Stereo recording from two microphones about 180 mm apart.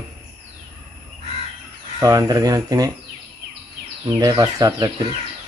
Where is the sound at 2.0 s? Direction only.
20° right (ahead or behind).